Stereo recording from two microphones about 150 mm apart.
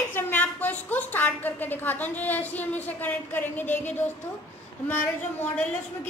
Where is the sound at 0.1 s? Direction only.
10° left (ahead or behind).